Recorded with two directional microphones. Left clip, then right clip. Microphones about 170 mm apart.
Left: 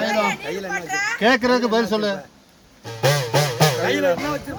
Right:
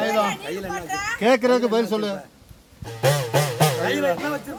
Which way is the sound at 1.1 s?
25° left (ahead or behind).